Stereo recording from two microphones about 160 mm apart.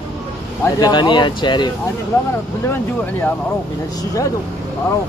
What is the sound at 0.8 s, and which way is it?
Speech, 30° left (ahead or behind).